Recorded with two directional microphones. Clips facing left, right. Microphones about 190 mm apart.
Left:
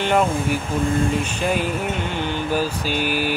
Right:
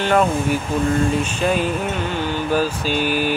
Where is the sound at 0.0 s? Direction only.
15° left (ahead or behind).